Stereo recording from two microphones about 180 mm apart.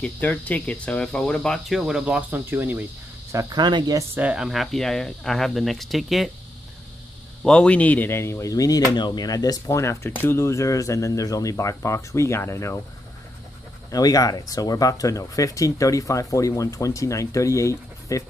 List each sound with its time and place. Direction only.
0.0 s speech: 10° left (ahead or behind); by 4.2 s 20° right (ahead or behind)
4.2 s speech: 5° right (ahead or behind)
7.4 s speech: 5° left (ahead or behind)
13.9 s speech: 20° left (ahead or behind)